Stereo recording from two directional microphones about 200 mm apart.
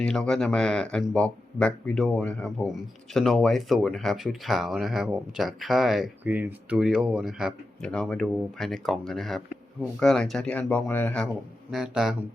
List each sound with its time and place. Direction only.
0.0 s speech: 5° left (ahead or behind)